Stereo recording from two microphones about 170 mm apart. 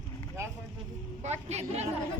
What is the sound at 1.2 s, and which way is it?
Speech, 40° right (ahead or behind).